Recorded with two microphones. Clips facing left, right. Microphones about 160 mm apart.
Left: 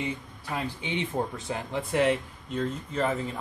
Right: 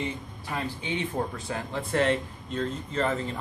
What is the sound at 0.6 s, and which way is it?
Speech, 20° left (ahead or behind).